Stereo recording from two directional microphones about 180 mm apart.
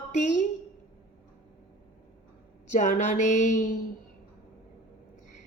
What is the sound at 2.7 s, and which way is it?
A woman's voice, 45° left (ahead or behind).